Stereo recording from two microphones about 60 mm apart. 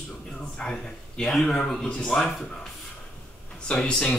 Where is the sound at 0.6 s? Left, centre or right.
Centre.